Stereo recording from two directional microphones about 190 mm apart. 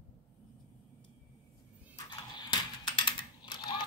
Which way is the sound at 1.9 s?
25° left (ahead or behind).